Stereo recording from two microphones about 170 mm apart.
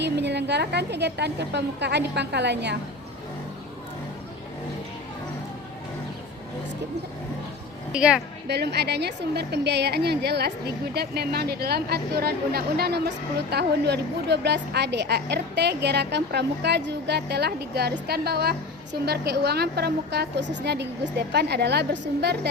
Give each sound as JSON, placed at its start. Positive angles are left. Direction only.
{"t": 0.0, "sound": "a woman's voice", "side_deg": -85}
{"t": 7.9, "sound": "a woman's voice", "side_deg": -5}
{"t": 8.4, "sound": "a woman's voice", "side_deg": -75}